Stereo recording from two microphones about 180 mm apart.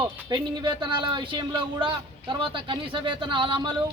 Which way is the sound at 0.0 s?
25° right (ahead or behind).